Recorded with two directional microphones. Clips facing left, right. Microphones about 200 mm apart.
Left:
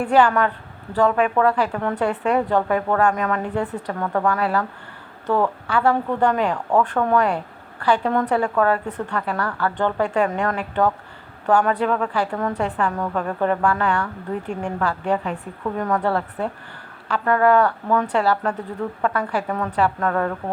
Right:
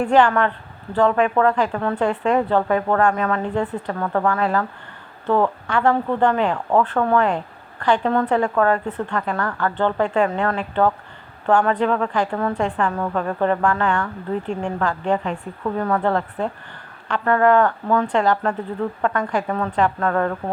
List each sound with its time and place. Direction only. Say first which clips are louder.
0.0 s speech: right 1 dB; 10° left (ahead or behind)